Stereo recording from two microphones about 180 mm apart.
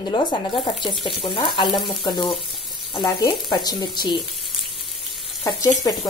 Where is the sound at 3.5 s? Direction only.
25° left (ahead or behind).